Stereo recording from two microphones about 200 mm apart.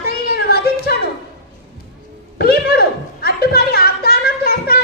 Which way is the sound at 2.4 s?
50° left (ahead or behind).